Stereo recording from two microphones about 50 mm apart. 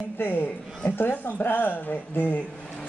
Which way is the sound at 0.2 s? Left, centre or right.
Left.